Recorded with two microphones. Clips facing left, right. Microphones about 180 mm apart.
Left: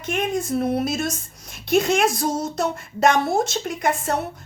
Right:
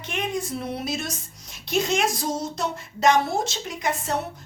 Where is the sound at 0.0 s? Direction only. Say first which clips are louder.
Left 4 dB; 50° left (ahead or behind).